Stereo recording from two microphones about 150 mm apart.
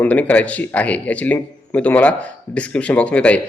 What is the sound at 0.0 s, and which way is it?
A man's voice, 10° left (ahead or behind).